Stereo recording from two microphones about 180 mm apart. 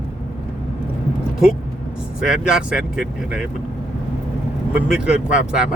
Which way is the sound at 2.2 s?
5° right (ahead or behind).